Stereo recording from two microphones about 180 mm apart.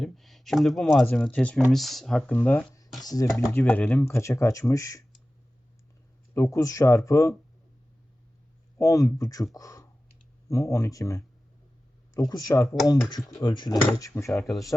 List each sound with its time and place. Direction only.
0.0 s a sound: centre (ahead or behind)
1.0 s speech: 5° left (ahead or behind)
3.0 s speech: 20° left (ahead or behind)
3.5 s speech: 10° left (ahead or behind)
6.3 s speech: 15° left (ahead or behind)
8.8 s speech: 20° left (ahead or behind)